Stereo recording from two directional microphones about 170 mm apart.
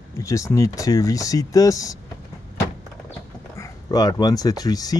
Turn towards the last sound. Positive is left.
turn(degrees=20)  # may be behind; listen again after turning